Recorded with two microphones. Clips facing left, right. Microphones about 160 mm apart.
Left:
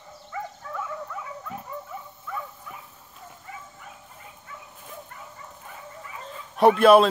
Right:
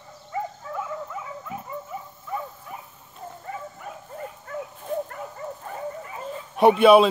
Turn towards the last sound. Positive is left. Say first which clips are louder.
# right 1 dB
turn(degrees=0)  # may be behind; listen again after turning